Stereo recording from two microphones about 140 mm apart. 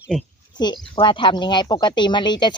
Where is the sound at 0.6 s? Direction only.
30° left (ahead or behind).